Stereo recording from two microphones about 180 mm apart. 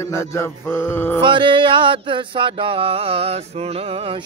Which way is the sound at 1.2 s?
25° right (ahead or behind).